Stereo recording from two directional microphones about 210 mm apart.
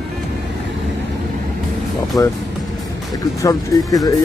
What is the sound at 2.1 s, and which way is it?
Speech, 15° left (ahead or behind).